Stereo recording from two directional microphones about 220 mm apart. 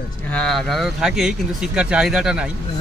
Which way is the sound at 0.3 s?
Centre (ahead or behind).